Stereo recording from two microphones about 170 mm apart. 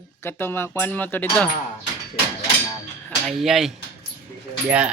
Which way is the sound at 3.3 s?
Centre (ahead or behind).